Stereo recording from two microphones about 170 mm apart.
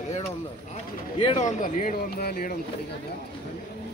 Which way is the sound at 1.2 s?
40° left (ahead or behind).